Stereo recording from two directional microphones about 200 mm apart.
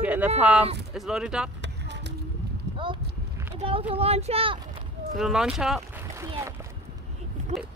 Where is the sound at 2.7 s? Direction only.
25° right (ahead or behind).